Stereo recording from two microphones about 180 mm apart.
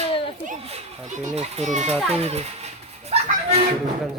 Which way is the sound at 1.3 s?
40° right (ahead or behind).